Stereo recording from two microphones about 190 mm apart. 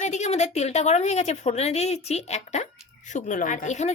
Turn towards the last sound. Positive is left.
turn(degrees=40)  # may be behind; listen again after turning